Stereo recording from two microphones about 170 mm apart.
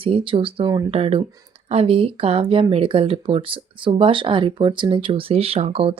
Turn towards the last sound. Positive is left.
turn(degrees=-35)  # may be behind; listen again after turning